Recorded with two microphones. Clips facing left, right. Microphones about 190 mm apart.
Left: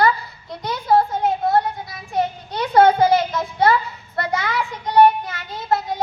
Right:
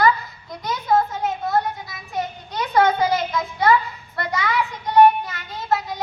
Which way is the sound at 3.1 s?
35° left (ahead or behind).